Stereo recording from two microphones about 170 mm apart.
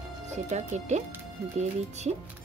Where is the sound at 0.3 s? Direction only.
40° right (ahead or behind).